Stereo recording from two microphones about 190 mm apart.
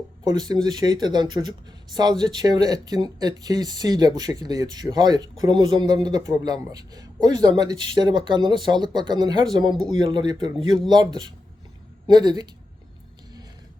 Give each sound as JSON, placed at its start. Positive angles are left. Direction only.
{"t": 0.3, "sound": "speech", "side_deg": -20}